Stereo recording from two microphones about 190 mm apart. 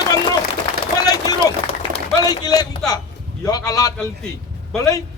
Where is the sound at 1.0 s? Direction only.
20° left (ahead or behind).